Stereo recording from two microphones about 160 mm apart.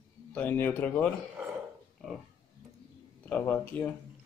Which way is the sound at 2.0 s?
Centre (ahead or behind).